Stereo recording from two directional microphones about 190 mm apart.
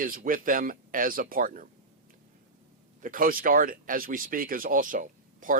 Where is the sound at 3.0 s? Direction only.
45° right (ahead or behind).